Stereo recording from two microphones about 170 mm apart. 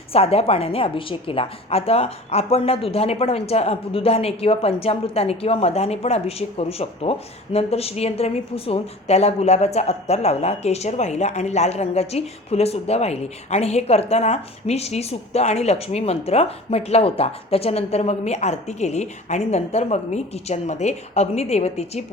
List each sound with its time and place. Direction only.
0.1 s a woman's voice: 35° left (ahead or behind)